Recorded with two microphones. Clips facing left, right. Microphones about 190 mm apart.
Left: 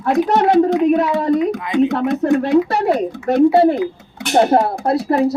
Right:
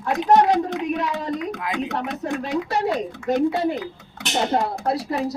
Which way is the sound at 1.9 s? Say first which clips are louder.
Left 10 dB; 65° left (ahead or behind).